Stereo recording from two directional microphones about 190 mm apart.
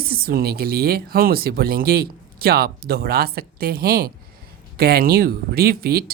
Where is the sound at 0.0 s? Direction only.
50° right (ahead or behind).